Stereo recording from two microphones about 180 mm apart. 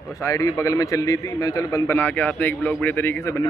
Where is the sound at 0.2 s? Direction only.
15° left (ahead or behind).